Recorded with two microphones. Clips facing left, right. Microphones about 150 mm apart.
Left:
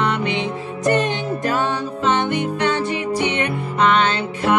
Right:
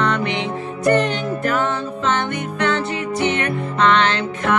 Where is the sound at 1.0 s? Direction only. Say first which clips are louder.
Right 1 dB; 15° left (ahead or behind).